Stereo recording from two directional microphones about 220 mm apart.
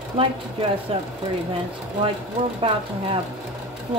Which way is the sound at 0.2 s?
25° right (ahead or behind).